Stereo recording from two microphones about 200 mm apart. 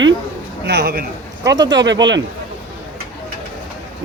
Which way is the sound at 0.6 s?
55° right (ahead or behind).